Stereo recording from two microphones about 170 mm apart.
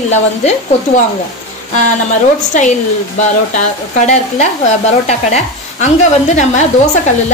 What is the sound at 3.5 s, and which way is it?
A woman's voice, 45° left (ahead or behind).